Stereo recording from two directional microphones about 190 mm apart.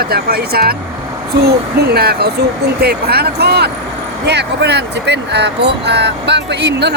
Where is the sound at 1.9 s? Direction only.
55° right (ahead or behind).